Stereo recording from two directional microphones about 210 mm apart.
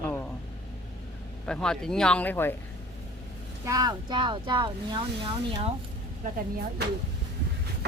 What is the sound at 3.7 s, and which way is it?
Speech, 15° right (ahead or behind).